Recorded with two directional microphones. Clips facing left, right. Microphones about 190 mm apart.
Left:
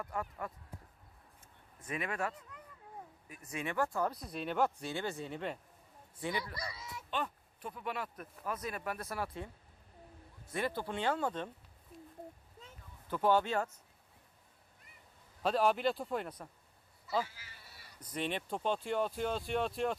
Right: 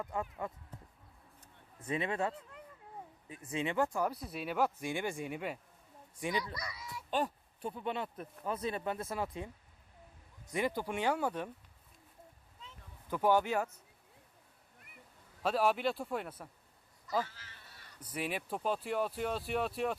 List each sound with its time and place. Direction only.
0.0 s speech: 20° right (ahead or behind)
1.9 s speech: 25° right (ahead or behind)
6.4 s speech: 30° left (ahead or behind)
7.1 s speech: 40° right (ahead or behind); by 11.5 s 10° right (ahead or behind)
13.1 s speech: 10° right (ahead or behind)
15.4 s speech: centre (ahead or behind)
17.1 s insect: 10° left (ahead or behind)
18.0 s speech: 10° right (ahead or behind)